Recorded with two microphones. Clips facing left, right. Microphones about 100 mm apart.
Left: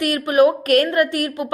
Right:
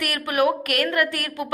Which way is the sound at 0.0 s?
25° left (ahead or behind).